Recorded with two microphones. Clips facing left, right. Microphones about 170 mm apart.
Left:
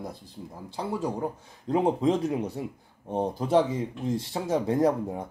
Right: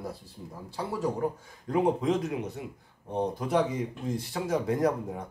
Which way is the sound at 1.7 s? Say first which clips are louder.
Left 2 dB; 30° left (ahead or behind).